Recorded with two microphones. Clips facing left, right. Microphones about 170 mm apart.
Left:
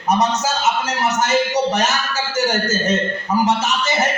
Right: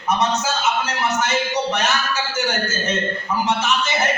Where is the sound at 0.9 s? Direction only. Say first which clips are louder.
Left 3 dB; 40° left (ahead or behind).